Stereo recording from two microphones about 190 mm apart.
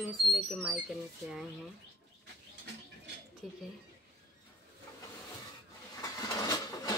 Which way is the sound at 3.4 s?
Centre (ahead or behind).